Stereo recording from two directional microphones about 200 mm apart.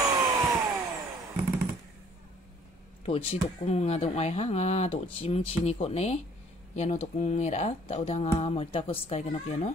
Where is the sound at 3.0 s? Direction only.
30° left (ahead or behind).